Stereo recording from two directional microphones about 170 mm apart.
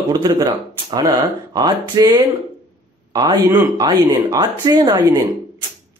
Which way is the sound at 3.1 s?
25° right (ahead or behind).